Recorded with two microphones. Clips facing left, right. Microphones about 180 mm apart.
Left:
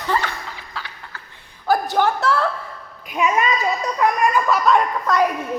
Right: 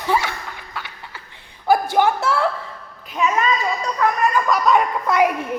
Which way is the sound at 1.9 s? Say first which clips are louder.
Right 1 dB; 10° right (ahead or behind).